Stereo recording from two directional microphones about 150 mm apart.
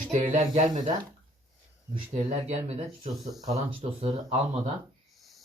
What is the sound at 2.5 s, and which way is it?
Speech, 45° right (ahead or behind).